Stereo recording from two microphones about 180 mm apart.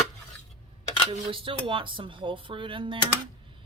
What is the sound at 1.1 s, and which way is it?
Speech, 30° right (ahead or behind).